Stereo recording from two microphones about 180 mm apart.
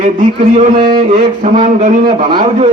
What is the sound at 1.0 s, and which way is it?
Speech, 40° right (ahead or behind).